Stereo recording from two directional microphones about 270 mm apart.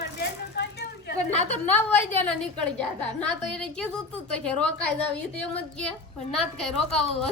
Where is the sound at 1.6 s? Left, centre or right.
Centre.